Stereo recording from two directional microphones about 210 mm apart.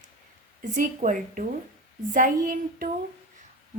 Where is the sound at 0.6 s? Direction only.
35° right (ahead or behind).